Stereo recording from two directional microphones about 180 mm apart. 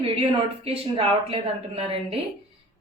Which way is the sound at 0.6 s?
35° right (ahead or behind).